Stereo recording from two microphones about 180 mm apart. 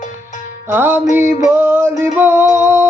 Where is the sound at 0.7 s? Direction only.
10° right (ahead or behind).